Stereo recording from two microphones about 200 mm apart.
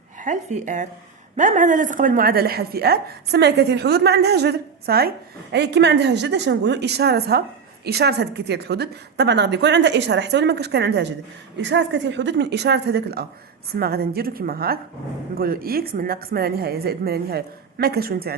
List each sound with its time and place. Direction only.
0.2 s a woman's voice: 40° right (ahead or behind)